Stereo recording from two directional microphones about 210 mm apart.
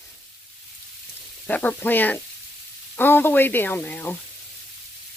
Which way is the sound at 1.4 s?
5° left (ahead or behind).